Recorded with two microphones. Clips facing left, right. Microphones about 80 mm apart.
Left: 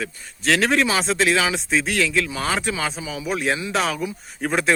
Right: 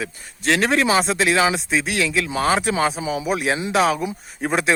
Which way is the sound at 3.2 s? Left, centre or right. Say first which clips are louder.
Left 1 dB; centre.